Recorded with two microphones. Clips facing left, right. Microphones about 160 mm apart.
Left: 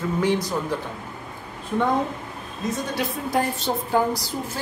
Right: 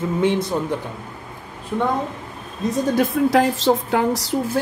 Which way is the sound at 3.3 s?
90° right.